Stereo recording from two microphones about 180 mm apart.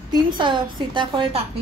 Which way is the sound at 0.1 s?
25° right (ahead or behind).